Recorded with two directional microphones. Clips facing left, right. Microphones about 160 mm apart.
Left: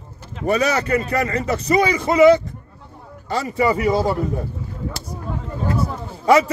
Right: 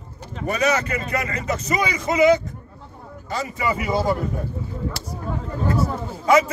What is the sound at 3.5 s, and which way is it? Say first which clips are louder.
Speech: left 7 dB; 35° left (ahead or behind).